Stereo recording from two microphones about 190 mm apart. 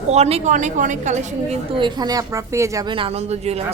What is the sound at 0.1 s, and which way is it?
A woman's voice, 35° right (ahead or behind).